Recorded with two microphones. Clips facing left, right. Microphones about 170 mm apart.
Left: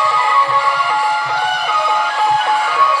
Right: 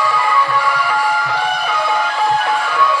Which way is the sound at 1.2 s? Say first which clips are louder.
Even; 5° left (ahead or behind).